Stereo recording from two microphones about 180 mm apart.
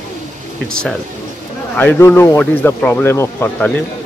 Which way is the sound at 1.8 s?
10° left (ahead or behind).